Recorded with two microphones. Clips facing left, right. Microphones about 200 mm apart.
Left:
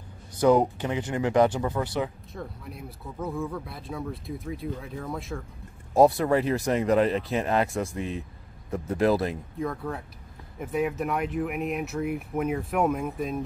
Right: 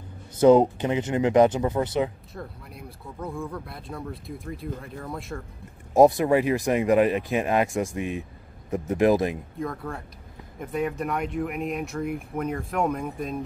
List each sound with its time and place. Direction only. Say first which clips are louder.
0.4 s speech: right 4 dB; 25° right (ahead or behind)
2.3 s speech: left 1 dB; centre (ahead or behind)
5.9 s speech: right 2 dB; 15° right (ahead or behind)
9.6 s speech: left 3 dB; centre (ahead or behind)